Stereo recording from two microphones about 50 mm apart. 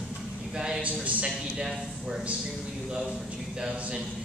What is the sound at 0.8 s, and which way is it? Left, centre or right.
Speech, right.